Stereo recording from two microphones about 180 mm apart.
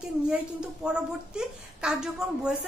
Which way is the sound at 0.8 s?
5° right (ahead or behind).